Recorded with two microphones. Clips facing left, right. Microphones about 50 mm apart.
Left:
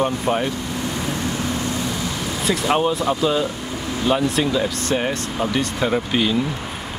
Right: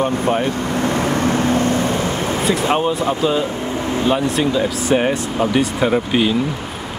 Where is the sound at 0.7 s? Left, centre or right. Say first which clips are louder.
Right 7 dB; right.